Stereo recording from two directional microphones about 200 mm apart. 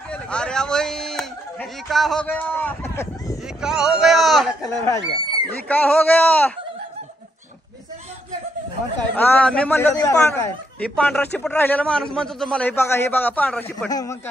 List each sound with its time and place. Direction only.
0.1 s a man's voice: 5° left (ahead or behind)
3.6 s speech: 5° right (ahead or behind)
4.6 s speech: 15° left (ahead or behind)
9.1 s speech: 10° left (ahead or behind)
13.8 s speech: 20° left (ahead or behind)